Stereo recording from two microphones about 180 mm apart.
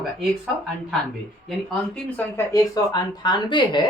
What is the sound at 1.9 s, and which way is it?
Speech, 10° left (ahead or behind).